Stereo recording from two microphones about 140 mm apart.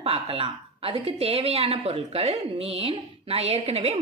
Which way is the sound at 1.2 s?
45° right (ahead or behind).